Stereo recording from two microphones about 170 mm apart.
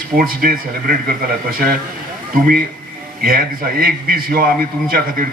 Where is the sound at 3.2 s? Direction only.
60° right (ahead or behind).